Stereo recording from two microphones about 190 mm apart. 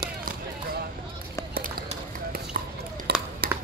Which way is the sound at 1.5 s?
50° right (ahead or behind).